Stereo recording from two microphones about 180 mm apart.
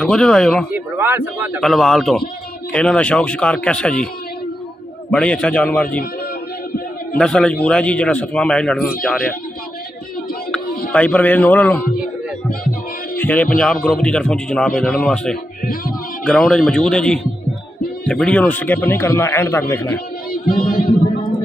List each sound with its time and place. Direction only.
0.0 s a man's voice: 5° left (ahead or behind)
0.7 s a man's voice: 10° right (ahead or behind)
1.6 s a man's voice: centre (ahead or behind)
5.1 s a man's voice: 5° left (ahead or behind)
7.2 s a man's voice: 5° left (ahead or behind)
10.9 s speech: 10° left (ahead or behind)
13.2 s a man's voice: 10° left (ahead or behind)
15.6 s speech: 50° left (ahead or behind)
16.3 s a man's voice: 5° left (ahead or behind)
20.4 s music: 55° left (ahead or behind)